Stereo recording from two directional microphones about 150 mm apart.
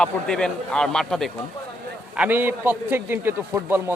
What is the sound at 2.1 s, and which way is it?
A man's voice, 10° right (ahead or behind).